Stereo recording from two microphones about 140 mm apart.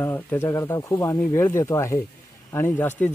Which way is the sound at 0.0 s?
15° left (ahead or behind).